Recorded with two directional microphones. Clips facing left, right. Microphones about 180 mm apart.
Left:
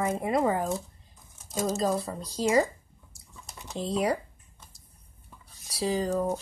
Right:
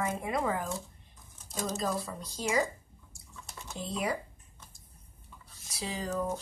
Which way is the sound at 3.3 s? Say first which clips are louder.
Left 2 dB; 15° left (ahead or behind).